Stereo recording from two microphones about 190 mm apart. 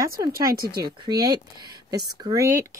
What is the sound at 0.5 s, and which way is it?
Speech, 50° right (ahead or behind).